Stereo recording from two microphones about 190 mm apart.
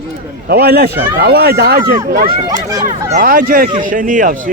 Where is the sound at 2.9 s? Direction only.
45° right (ahead or behind).